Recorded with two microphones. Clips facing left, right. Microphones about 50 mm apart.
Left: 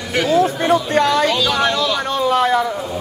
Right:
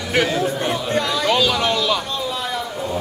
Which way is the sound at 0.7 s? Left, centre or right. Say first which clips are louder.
Left 6 dB; left.